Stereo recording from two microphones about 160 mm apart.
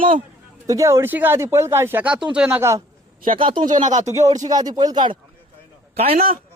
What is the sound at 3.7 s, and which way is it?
Speech, 50° right (ahead or behind).